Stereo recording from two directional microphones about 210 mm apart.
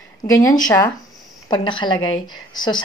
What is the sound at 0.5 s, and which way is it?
A woman's voice, 20° left (ahead or behind).